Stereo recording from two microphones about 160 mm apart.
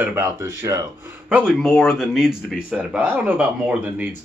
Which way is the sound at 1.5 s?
Centre (ahead or behind).